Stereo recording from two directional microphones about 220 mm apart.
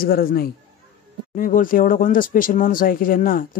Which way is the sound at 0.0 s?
40° left (ahead or behind).